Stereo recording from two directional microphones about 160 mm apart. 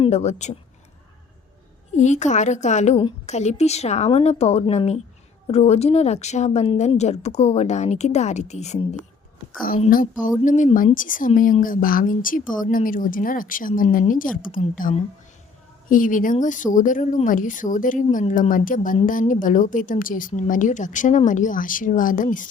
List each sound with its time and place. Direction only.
0.0 s speech: 45° left (ahead or behind)
2.0 s a woman's voice: 45° left (ahead or behind)
9.6 s a woman's voice: 65° left (ahead or behind)